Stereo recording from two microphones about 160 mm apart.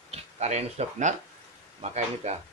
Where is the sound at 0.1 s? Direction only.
45° right (ahead or behind).